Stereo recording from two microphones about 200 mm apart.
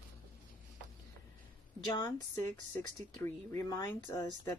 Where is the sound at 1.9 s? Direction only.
20° left (ahead or behind).